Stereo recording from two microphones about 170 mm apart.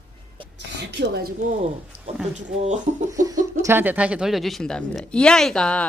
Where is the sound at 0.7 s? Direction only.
75° right (ahead or behind).